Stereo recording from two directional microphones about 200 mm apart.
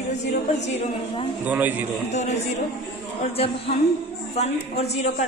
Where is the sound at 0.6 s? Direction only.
30° left (ahead or behind).